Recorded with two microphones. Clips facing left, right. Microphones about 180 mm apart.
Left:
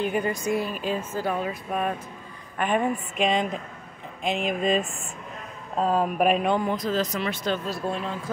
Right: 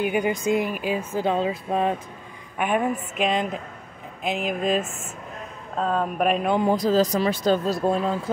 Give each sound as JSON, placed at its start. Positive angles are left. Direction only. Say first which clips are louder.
{"t": 0.0, "sound": "speech", "louder": "right 2 dB", "side_deg": -10}
{"t": 0.3, "sound": "speech", "louder": "right 3 dB", "side_deg": -20}
{"t": 1.2, "sound": "speech", "louder": "right 4 dB", "side_deg": -25}
{"t": 2.5, "sound": "a woman's voice", "louder": "right 1 dB", "side_deg": -10}
{"t": 6.6, "sound": "speech", "louder": "right 6 dB", "side_deg": -35}